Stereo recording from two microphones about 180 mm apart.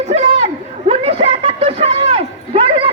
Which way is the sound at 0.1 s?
35° right (ahead or behind).